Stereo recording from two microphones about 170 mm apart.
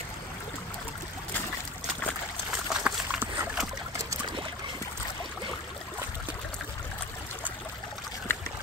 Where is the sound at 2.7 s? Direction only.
5° right (ahead or behind).